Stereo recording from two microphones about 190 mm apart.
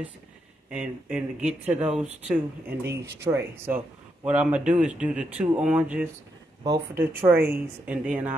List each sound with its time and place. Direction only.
0.7 s speech: 5° right (ahead or behind)